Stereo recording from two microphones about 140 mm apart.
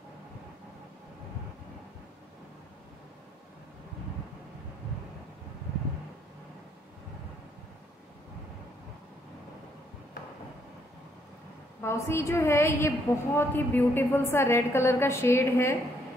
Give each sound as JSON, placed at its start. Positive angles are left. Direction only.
{"t": 11.8, "sound": "a woman's voice", "side_deg": 20}